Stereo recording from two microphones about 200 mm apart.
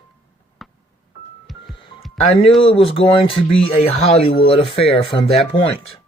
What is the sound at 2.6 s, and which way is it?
Speech, 25° left (ahead or behind).